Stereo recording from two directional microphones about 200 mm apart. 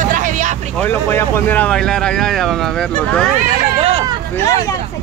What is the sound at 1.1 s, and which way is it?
Speech, 10° left (ahead or behind).